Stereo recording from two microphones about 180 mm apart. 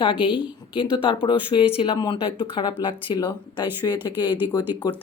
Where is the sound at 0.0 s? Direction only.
25° left (ahead or behind).